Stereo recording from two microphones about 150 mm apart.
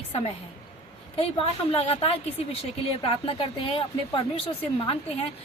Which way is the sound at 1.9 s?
40° left (ahead or behind).